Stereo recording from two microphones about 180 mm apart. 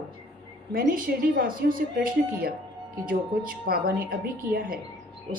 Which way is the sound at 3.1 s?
55° right (ahead or behind).